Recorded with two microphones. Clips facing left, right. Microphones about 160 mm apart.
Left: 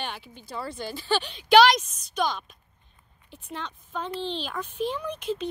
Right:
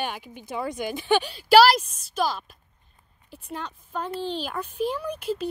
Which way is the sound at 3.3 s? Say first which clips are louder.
Right 2 dB; 10° right (ahead or behind).